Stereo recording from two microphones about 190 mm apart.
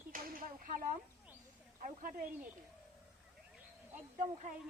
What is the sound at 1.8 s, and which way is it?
Speech, 45° right (ahead or behind).